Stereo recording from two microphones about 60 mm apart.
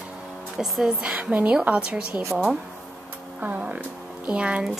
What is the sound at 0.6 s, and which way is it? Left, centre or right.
Speech, centre.